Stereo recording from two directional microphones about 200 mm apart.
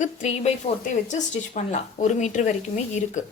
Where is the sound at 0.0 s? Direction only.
35° left (ahead or behind).